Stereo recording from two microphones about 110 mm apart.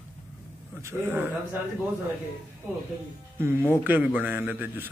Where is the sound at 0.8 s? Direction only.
20° right (ahead or behind).